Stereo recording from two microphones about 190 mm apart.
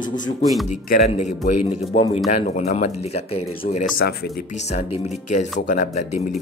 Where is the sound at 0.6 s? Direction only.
45° left (ahead or behind).